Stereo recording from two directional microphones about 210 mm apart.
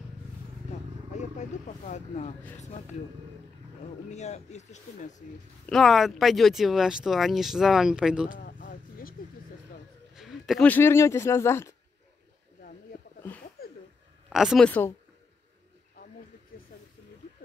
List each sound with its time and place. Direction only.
1.9 s speech: 35° left (ahead or behind)
4.1 s speech: 35° left (ahead or behind)
5.7 s speech: centre (ahead or behind)
8.3 s a sound: 40° left (ahead or behind)
10.1 s speech: centre (ahead or behind)
14.3 s speech: centre (ahead or behind)
14.7 s speech: 10° left (ahead or behind)